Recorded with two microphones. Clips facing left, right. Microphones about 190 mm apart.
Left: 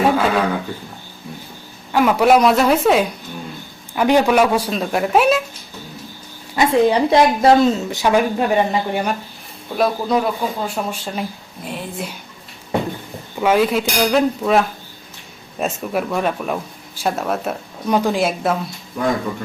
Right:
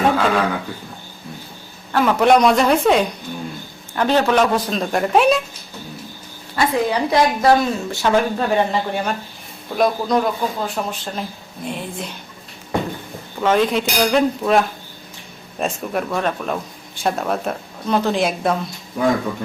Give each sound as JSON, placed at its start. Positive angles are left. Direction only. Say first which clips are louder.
{"t": 0.0, "sound": "a man's voice", "louder": "left 1 dB", "side_deg": 5}
{"t": 1.9, "sound": "a woman's voice", "louder": "left 1 dB", "side_deg": 10}
{"t": 6.6, "sound": "a woman's voice", "louder": "left 4 dB", "side_deg": 25}
{"t": 13.4, "sound": "a woman's voice", "louder": "left 1 dB", "side_deg": 10}